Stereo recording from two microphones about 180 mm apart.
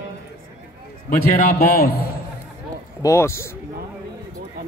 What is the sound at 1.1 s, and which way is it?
Speech, 50° left (ahead or behind).